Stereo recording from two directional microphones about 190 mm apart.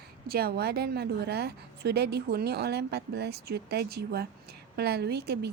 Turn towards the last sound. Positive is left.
turn(degrees=-60)  # may be behind; listen again after turning